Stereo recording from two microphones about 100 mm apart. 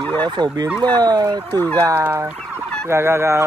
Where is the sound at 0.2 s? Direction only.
45° right (ahead or behind).